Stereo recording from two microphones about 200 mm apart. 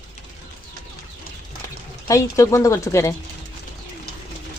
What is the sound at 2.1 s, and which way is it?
A woman's voice, 15° left (ahead or behind).